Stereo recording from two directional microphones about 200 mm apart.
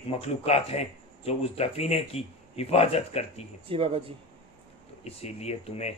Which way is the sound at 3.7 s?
25° right (ahead or behind).